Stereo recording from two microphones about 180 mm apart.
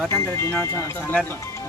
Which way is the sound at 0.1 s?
15° left (ahead or behind).